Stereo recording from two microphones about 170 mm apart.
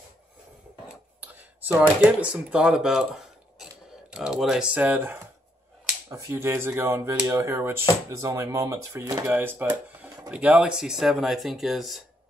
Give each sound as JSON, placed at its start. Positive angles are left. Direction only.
{"t": 1.2, "sound": "speech", "side_deg": -10}